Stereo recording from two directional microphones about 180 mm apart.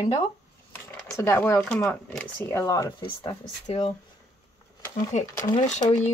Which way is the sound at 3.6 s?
35° left (ahead or behind).